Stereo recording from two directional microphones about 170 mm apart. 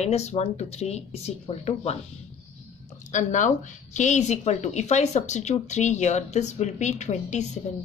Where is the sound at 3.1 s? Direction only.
45° left (ahead or behind).